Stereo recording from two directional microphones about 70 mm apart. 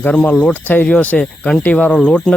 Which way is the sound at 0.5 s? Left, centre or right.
Left.